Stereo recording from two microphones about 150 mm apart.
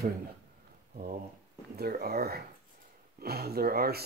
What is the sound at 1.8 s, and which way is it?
Speech, 90° right.